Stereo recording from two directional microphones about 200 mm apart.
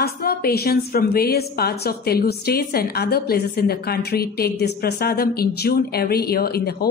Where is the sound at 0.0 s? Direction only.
50° left (ahead or behind).